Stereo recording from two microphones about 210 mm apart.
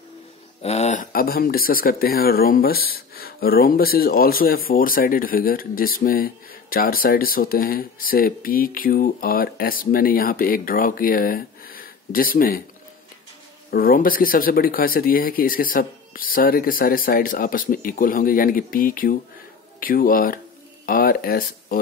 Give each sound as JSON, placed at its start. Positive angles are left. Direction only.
{"t": 0.6, "sound": "speech", "side_deg": 30}
{"t": 13.7, "sound": "speech", "side_deg": 45}